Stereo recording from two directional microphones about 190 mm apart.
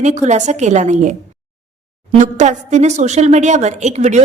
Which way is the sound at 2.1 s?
40° right (ahead or behind).